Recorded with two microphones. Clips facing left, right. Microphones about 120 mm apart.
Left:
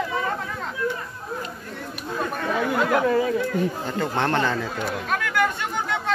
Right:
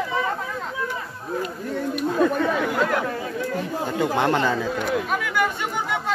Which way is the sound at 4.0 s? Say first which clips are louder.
Right 2 dB; 10° right (ahead or behind).